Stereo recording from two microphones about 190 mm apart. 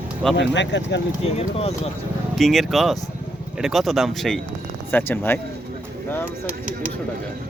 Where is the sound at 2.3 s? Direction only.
Centre (ahead or behind).